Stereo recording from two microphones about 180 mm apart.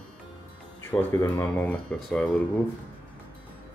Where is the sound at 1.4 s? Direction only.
10° left (ahead or behind).